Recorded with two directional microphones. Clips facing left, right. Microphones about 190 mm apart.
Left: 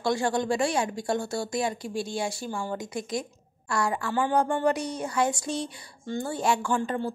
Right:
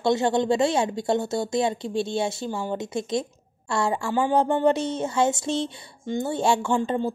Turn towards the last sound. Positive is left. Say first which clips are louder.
# right 4 dB
turn(degrees=-20)  # may be behind; listen again after turning